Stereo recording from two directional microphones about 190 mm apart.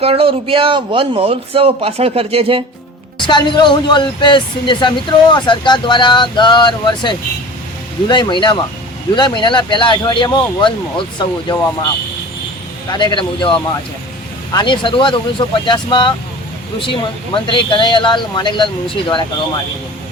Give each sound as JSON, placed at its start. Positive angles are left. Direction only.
{"t": 0.0, "sound": "a man's voice", "side_deg": -30}
{"t": 3.2, "sound": "speech", "side_deg": 25}
{"t": 12.9, "sound": "speech", "side_deg": 25}